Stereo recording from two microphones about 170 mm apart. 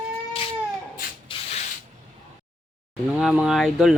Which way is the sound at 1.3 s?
30° left (ahead or behind).